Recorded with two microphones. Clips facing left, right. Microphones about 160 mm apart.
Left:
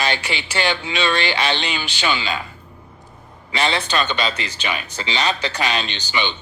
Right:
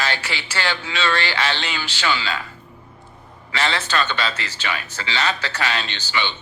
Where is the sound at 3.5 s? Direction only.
15° left (ahead or behind).